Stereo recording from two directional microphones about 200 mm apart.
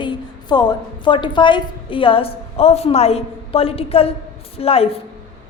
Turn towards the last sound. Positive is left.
turn(degrees=30)  # may be behind; listen again after turning